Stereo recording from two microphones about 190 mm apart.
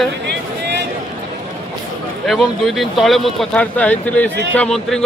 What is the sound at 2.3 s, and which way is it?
Speech, centre (ahead or behind).